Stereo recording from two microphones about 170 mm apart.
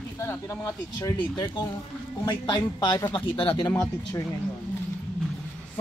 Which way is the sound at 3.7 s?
15° left (ahead or behind).